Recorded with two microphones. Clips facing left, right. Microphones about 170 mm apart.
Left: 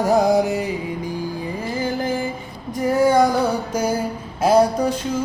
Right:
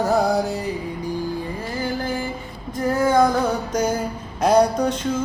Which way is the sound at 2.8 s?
15° left (ahead or behind).